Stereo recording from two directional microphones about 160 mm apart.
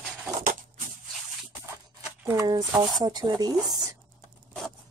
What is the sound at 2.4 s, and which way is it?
Speech, 25° right (ahead or behind).